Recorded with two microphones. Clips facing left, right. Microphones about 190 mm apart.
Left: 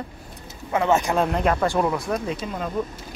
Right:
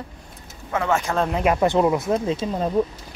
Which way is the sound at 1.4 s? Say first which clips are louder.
Right 3 dB; 20° right (ahead or behind).